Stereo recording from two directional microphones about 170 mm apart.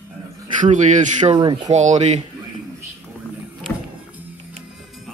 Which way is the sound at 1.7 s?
45° right (ahead or behind).